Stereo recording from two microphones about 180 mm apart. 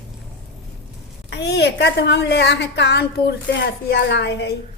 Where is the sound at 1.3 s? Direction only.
70° left (ahead or behind).